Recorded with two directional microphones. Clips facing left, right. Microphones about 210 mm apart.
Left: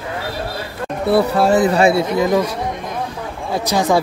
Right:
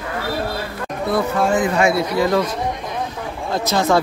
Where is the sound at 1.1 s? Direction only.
35° left (ahead or behind).